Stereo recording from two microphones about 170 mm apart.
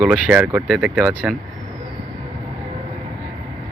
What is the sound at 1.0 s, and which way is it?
Speech, 10° right (ahead or behind).